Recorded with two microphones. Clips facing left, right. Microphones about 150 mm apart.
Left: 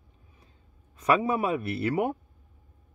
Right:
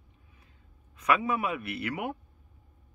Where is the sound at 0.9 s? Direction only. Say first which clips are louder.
Left 3 dB; 35° left (ahead or behind).